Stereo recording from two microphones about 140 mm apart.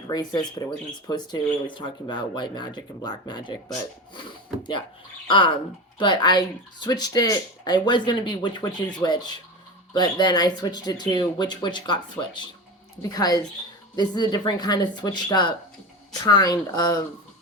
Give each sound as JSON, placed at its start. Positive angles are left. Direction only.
{"t": 0.1, "sound": "speech", "side_deg": 30}
{"t": 6.0, "sound": "speech", "side_deg": 30}